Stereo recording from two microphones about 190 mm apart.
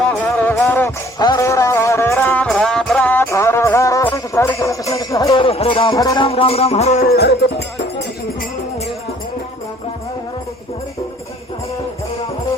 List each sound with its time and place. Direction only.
0.2 s music: 10° left (ahead or behind); by 7.0 s 35° left (ahead or behind)
7.0 s music: 55° left (ahead or behind)